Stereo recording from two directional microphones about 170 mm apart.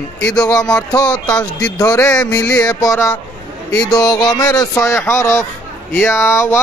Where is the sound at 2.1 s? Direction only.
5° left (ahead or behind).